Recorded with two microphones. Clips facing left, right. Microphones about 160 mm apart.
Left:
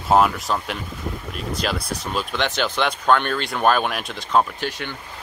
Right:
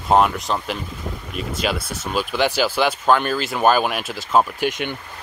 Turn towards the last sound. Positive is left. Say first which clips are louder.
# right 5 dB
turn(degrees=-20)  # may be behind; listen again after turning